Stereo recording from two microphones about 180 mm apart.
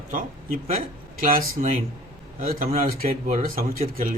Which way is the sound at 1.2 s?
45° right (ahead or behind).